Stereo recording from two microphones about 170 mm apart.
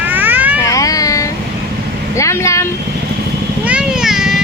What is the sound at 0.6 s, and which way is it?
Cat, 20° left (ahead or behind).